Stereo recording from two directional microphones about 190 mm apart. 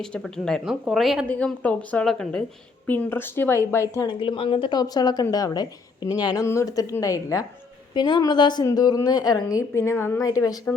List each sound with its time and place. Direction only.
0.0 s a woman's voice: 5° left (ahead or behind)
4.2 s a woman's voice: 25° left (ahead or behind)